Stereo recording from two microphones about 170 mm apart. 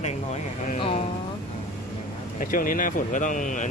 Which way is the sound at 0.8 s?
30° left (ahead or behind).